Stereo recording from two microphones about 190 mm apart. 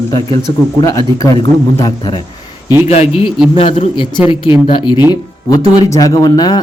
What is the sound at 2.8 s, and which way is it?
A man's voice, 35° left (ahead or behind).